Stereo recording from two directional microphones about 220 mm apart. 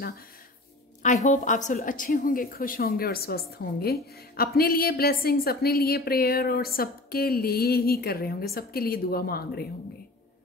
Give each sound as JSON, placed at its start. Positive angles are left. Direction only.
{"t": 1.0, "sound": "a woman's voice", "side_deg": 35}